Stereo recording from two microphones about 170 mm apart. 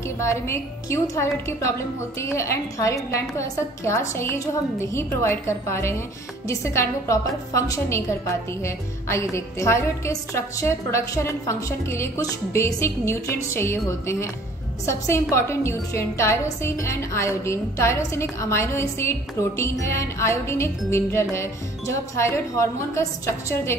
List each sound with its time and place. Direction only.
0.2 s a woman's voice: 15° left (ahead or behind)